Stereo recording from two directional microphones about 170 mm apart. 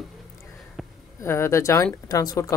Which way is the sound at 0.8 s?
Centre (ahead or behind).